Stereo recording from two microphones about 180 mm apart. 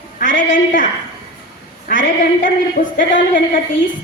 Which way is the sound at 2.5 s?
50° left (ahead or behind).